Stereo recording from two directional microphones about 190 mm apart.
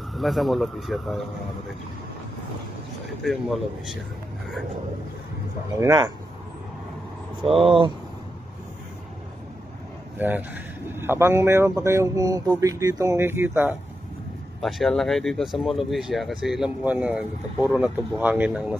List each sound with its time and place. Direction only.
0.1 s speech: centre (ahead or behind)
3.3 s speech: centre (ahead or behind)
5.8 s speech: 15° right (ahead or behind)
7.4 s speech: 30° right (ahead or behind)
10.1 s speech: 10° right (ahead or behind)
14.6 s speech: centre (ahead or behind)